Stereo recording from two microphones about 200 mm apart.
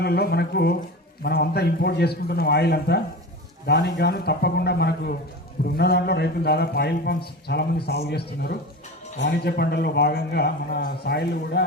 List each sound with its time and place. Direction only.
0.0 s a man's voice: 50° left (ahead or behind)